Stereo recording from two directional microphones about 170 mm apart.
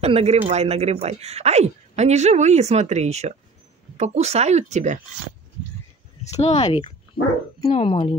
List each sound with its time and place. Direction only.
0.0 s speech: 35° right (ahead or behind)
6.2 s speech: 40° left (ahead or behind)